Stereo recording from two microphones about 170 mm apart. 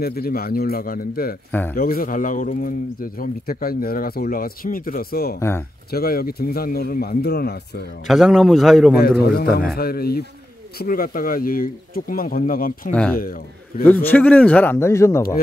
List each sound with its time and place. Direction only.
0.0 s a man's voice: 60° left (ahead or behind)
1.5 s speech: 10° left (ahead or behind)
1.8 s a man's voice: 60° left (ahead or behind)
8.1 s a man's voice: centre (ahead or behind)
9.2 s a man's voice: 65° left (ahead or behind)
14.0 s speech: 10° left (ahead or behind)